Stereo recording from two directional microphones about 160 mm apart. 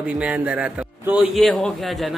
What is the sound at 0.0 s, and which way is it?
A man's voice, 5° right (ahead or behind).